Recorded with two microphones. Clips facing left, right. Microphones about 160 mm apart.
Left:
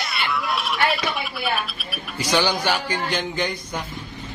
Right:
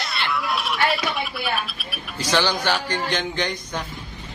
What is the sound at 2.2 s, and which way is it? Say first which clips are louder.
A man's voice: left 1 dB; 10° left (ahead or behind).